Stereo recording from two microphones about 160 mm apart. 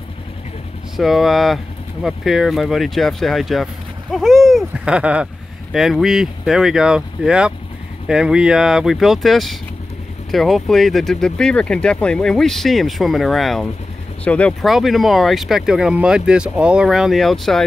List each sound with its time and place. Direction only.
0.9 s speech: centre (ahead or behind)